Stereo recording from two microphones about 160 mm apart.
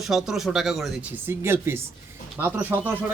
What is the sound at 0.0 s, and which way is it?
Speech, centre (ahead or behind).